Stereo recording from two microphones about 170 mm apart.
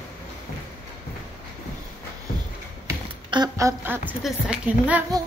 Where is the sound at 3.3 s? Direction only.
20° right (ahead or behind).